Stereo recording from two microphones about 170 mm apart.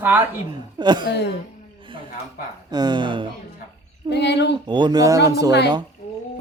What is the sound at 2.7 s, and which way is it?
Speech, 25° right (ahead or behind).